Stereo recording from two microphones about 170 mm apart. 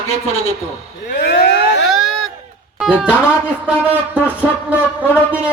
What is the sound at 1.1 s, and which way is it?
Speech, 75° left (ahead or behind).